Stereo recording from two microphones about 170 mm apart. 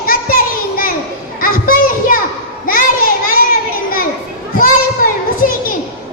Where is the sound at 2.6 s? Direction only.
55° left (ahead or behind).